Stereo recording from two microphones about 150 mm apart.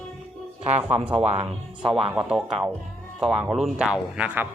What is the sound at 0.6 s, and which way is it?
Speech, 45° right (ahead or behind).